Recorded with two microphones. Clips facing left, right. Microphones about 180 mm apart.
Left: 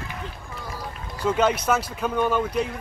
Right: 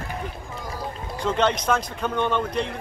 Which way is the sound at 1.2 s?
5° left (ahead or behind).